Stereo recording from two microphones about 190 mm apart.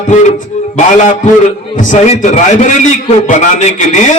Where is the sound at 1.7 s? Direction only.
45° left (ahead or behind).